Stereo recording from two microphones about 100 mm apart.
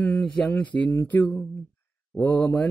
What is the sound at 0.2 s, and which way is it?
Mantra, 15° left (ahead or behind).